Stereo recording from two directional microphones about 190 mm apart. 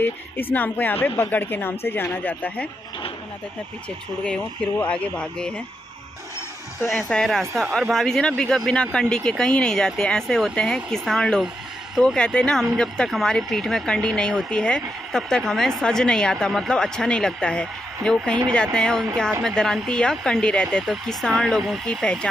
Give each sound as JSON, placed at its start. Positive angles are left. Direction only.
{"t": 0.0, "sound": "speech", "side_deg": 10}
{"t": 4.2, "sound": "speech", "side_deg": 5}
{"t": 6.9, "sound": "speech", "side_deg": 5}